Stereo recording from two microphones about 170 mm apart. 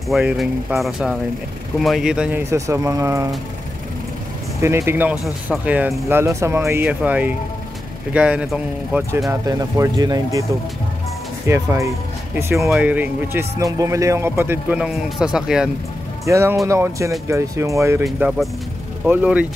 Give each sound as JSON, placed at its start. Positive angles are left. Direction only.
{"t": 0.1, "sound": "speech", "side_deg": -5}
{"t": 2.5, "sound": "speech", "side_deg": -20}
{"t": 4.6, "sound": "speech", "side_deg": -15}
{"t": 11.4, "sound": "speech", "side_deg": -15}
{"t": 16.3, "sound": "speech", "side_deg": -15}
{"t": 18.0, "sound": "speech", "side_deg": 0}